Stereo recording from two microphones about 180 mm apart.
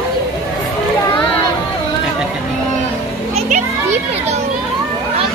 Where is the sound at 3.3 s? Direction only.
35° right (ahead or behind).